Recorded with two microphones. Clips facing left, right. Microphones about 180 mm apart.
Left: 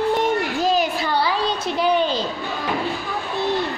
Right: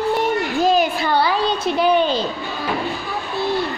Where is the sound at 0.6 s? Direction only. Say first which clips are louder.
Right 5 dB; 55° right (ahead or behind).